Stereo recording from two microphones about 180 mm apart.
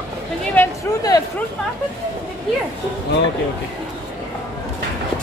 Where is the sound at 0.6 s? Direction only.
20° left (ahead or behind).